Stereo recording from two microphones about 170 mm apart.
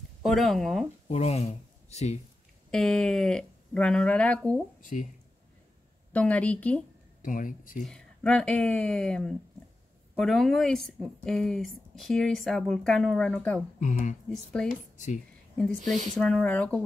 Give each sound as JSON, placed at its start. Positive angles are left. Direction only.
{"t": 0.2, "sound": "speech", "side_deg": 0}
{"t": 1.0, "sound": "speech", "side_deg": 40}
{"t": 2.7, "sound": "speech", "side_deg": 5}
{"t": 6.1, "sound": "a woman's voice", "side_deg": 10}
{"t": 7.2, "sound": "speech", "side_deg": 50}
{"t": 7.8, "sound": "speech", "side_deg": 5}
{"t": 13.7, "sound": "speech", "side_deg": 45}
{"t": 14.3, "sound": "a woman's voice", "side_deg": 5}